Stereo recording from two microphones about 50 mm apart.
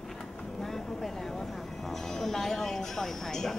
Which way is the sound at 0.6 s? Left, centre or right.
Centre.